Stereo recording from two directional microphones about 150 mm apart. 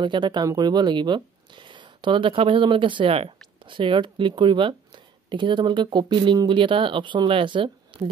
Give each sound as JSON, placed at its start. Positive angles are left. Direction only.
{"t": 0.0, "sound": "speech", "side_deg": -30}